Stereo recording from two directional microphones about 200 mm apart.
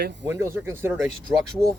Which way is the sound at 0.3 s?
10° right (ahead or behind).